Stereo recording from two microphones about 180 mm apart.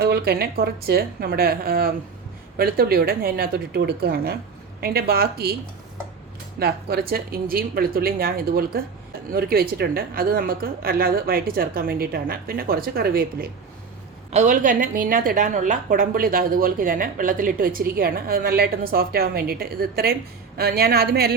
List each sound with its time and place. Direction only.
0.0 s a woman's voice: 60° right (ahead or behind)
6.6 s a woman's voice: 60° right (ahead or behind)
14.3 s a woman's voice: 40° right (ahead or behind); by 21.3 s 60° right (ahead or behind)